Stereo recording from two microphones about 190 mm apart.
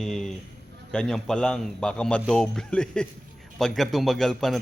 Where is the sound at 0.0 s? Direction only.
5° left (ahead or behind).